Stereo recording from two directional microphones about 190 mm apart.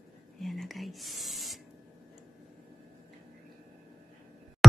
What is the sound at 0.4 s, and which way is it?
Whispering, centre (ahead or behind).